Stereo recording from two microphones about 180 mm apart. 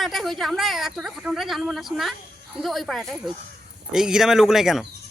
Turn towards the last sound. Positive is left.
turn(degrees=0)  # may be behind; listen again after turning